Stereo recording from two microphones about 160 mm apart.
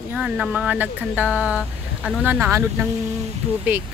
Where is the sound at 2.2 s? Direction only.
10° right (ahead or behind).